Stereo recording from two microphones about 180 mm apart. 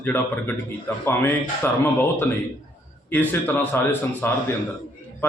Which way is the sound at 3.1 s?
10° left (ahead or behind).